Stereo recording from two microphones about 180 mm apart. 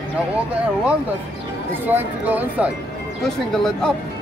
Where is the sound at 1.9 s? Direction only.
10° right (ahead or behind).